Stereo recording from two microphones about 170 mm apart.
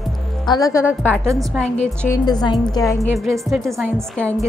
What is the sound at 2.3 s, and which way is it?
Speech, 25° left (ahead or behind).